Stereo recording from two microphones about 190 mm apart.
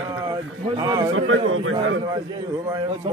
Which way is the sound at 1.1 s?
90° right.